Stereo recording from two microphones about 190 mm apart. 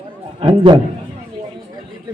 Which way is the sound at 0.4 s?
25° right (ahead or behind).